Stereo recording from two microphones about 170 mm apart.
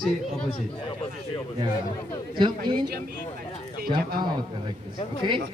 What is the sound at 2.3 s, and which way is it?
Speech, 25° right (ahead or behind).